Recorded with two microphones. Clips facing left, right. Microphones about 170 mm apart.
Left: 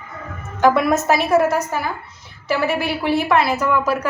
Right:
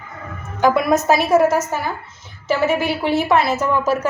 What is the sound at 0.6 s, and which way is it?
Speech, 20° right (ahead or behind).